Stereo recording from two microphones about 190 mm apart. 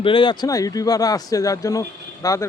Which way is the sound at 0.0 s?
25° left (ahead or behind).